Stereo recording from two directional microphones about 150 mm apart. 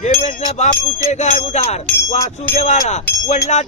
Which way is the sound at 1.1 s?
50° left (ahead or behind).